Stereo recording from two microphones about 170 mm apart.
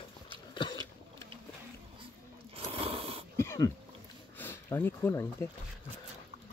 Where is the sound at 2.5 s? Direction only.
35° right (ahead or behind).